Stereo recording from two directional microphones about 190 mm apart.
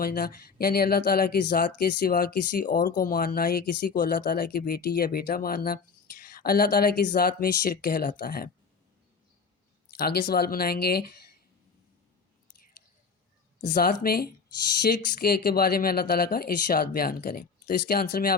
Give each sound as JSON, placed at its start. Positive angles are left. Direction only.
{"t": 0.0, "sound": "speech", "side_deg": 50}
{"t": 10.0, "sound": "speech", "side_deg": 55}
{"t": 13.7, "sound": "speech", "side_deg": 50}